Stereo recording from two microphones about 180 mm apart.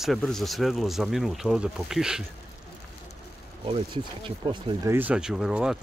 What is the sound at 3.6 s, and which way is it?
Speech, 30° right (ahead or behind).